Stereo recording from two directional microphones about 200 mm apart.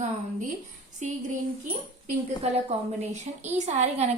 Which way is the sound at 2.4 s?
30° right (ahead or behind).